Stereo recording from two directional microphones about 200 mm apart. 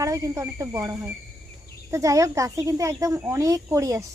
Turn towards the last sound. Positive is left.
turn(degrees=-15)  # may be behind; listen again after turning